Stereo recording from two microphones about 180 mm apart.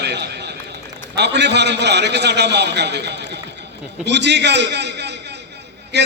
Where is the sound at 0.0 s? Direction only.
65° right (ahead or behind).